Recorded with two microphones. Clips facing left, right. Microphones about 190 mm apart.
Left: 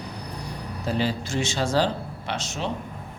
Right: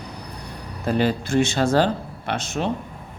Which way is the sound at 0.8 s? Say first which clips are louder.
Right 5 dB; 55° right (ahead or behind).